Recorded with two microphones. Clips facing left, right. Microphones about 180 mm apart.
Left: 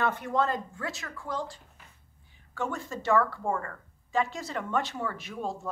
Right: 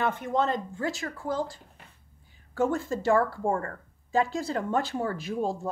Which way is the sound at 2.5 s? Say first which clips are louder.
Right 7 dB; 35° right (ahead or behind).